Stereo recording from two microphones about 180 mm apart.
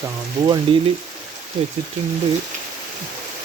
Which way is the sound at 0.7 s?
30° right (ahead or behind).